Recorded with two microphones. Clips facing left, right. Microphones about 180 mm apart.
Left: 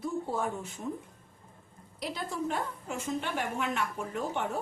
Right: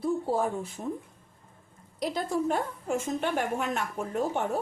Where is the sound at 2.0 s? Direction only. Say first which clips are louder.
Right 6 dB; 45° right (ahead or behind).